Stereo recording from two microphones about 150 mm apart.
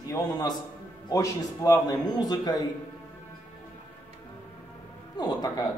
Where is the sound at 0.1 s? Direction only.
25° left (ahead or behind).